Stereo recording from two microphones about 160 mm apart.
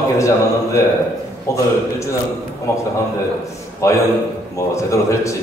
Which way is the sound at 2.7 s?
20° left (ahead or behind).